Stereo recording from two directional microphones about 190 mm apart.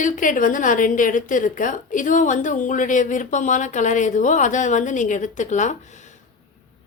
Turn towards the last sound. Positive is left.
turn(degrees=40)  # may be behind; listen again after turning